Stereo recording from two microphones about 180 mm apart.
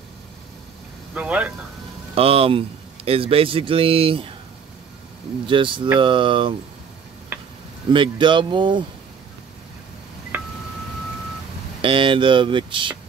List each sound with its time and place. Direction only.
1.1 s speech: 5° right (ahead or behind)
2.1 s speech: 30° right (ahead or behind)
5.5 s speech: 25° right (ahead or behind)
7.3 s a sound: 10° right (ahead or behind)
7.9 s speech: 25° right (ahead or behind)
10.3 s telephone dialing: 10° right (ahead or behind)
11.8 s speech: 30° right (ahead or behind)